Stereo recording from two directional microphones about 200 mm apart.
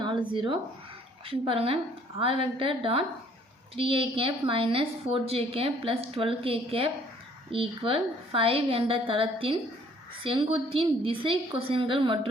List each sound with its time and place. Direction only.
0.3 s a woman's voice: 25° right (ahead or behind)